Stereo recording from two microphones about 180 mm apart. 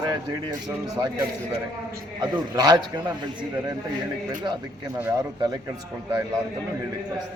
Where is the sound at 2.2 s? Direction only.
25° right (ahead or behind).